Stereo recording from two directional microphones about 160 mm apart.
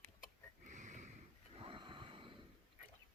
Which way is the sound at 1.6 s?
30° right (ahead or behind).